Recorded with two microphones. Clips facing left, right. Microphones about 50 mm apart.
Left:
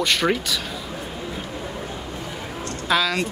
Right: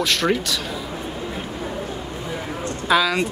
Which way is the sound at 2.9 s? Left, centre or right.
Centre.